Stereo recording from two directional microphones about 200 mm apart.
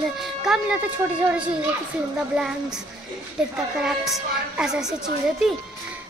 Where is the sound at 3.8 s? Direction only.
5° right (ahead or behind).